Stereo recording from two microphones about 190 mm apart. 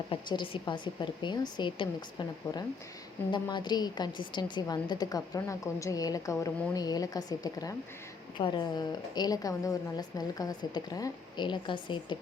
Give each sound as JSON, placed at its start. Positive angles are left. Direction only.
{"t": 0.1, "sound": "a woman's voice", "side_deg": 25}